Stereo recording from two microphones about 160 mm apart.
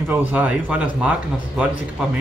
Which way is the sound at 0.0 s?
5° right (ahead or behind).